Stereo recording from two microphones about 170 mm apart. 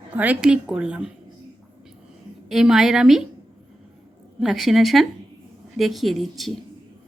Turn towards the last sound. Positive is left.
turn(degrees=0)  # may be behind; listen again after turning